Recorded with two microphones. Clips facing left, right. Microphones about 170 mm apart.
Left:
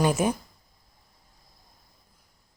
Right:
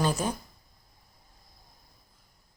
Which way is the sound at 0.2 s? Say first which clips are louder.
Left 6 dB; 15° left (ahead or behind).